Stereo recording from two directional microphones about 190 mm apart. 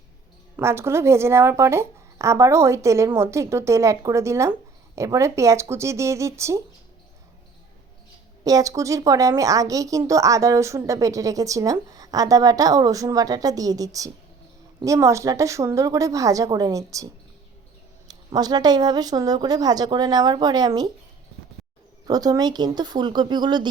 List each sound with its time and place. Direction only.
0.5 s a woman's voice: 15° right (ahead or behind)
8.4 s a woman's voice: 20° right (ahead or behind)
18.1 s a woman's voice: 20° right (ahead or behind)
22.0 s a woman's voice: 20° right (ahead or behind)